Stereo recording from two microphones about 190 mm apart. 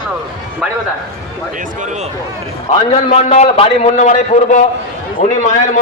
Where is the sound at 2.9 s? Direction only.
35° left (ahead or behind).